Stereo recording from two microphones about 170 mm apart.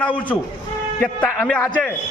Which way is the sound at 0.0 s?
10° left (ahead or behind).